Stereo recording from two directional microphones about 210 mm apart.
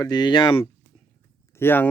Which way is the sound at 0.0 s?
20° left (ahead or behind).